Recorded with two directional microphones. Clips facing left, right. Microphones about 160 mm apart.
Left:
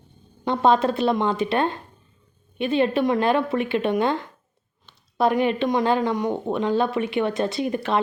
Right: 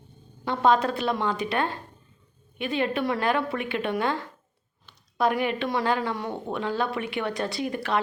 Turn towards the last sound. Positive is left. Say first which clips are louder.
# left 4 dB
turn(degrees=25)  # may be behind; listen again after turning